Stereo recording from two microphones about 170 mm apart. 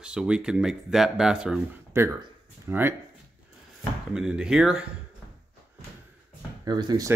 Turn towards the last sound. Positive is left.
turn(degrees=-25)  # may be behind; listen again after turning